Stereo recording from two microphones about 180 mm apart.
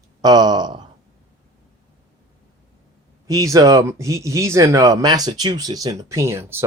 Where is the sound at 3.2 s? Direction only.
20° right (ahead or behind).